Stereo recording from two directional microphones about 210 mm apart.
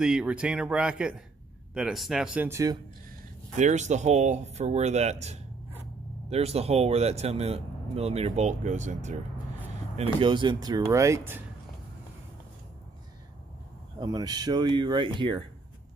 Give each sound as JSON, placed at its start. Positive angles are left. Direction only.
{"t": 0.0, "sound": "speech", "side_deg": -5}
{"t": 3.5, "sound": "a man's voice", "side_deg": -35}
{"t": 9.9, "sound": "speech", "side_deg": -25}
{"t": 13.9, "sound": "speech", "side_deg": -20}